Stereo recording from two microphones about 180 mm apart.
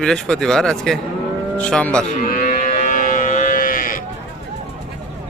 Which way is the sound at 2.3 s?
45° left (ahead or behind).